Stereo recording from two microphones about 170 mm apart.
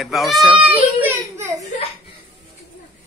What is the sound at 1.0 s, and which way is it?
Speech, 15° right (ahead or behind).